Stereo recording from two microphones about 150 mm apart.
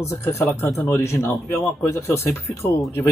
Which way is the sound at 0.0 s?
20° left (ahead or behind).